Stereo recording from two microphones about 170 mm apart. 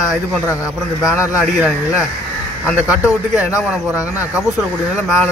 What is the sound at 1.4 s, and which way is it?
A man's voice, centre (ahead or behind).